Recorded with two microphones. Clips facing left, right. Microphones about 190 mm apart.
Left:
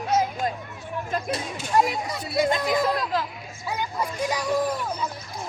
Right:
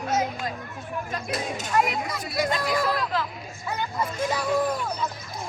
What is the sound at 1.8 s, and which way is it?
Speech, 30° left (ahead or behind).